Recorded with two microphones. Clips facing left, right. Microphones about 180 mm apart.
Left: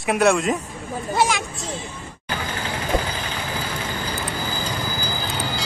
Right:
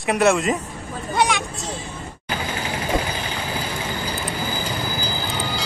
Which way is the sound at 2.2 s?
10° right (ahead or behind).